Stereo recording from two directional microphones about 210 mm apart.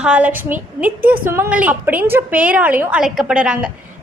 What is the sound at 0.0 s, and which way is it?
A woman's voice, 5° right (ahead or behind).